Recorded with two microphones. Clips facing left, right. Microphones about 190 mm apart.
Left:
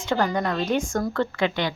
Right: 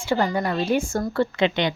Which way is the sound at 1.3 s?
20° right (ahead or behind).